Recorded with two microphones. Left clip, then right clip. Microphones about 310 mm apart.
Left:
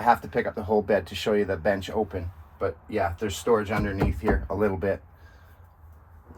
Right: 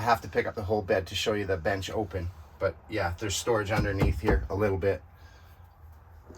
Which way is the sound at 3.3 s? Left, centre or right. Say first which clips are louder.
Left 4 dB; left.